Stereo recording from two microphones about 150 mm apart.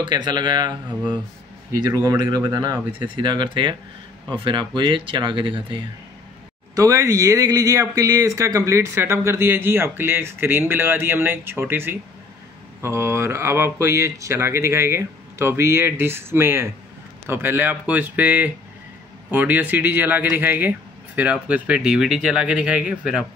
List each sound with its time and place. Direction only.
0.0 s speech: 30° right (ahead or behind)
2.0 s speech: 25° right (ahead or behind)
6.7 s speech: 20° right (ahead or behind); by 23.2 s 5° right (ahead or behind)